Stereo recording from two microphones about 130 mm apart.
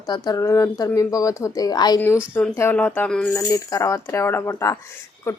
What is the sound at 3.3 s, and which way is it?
Speech, 25° left (ahead or behind).